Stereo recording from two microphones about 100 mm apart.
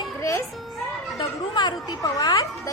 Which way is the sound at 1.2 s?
50° left (ahead or behind).